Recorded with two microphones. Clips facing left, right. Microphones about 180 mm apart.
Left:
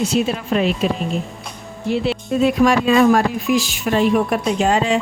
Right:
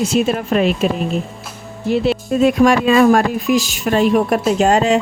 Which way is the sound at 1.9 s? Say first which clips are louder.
Right 3 dB; 45° right (ahead or behind).